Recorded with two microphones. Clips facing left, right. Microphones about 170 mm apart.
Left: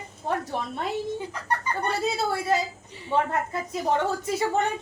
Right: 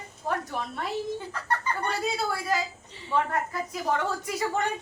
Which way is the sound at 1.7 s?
15° left (ahead or behind).